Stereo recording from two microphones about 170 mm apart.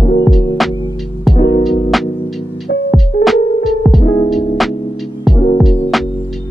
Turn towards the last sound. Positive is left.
turn(degrees=0)  # may be behind; listen again after turning